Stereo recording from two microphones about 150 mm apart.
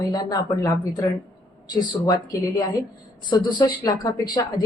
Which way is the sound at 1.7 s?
25° left (ahead or behind).